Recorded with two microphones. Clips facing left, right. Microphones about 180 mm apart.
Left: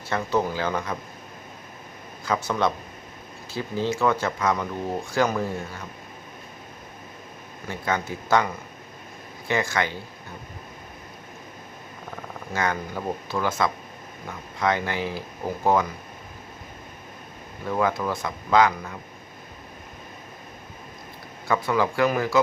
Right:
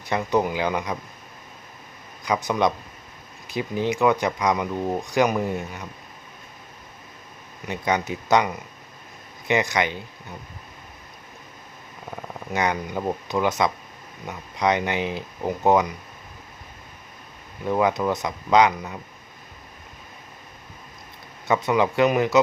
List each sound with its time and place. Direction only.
0.1 s speech: 15° right (ahead or behind)
2.2 s speech: 15° right (ahead or behind)
7.7 s speech: 20° right (ahead or behind)
9.5 s speech: 20° right (ahead or behind)
12.5 s speech: 20° right (ahead or behind)
17.7 s speech: 20° right (ahead or behind)
21.4 s speech: 20° right (ahead or behind)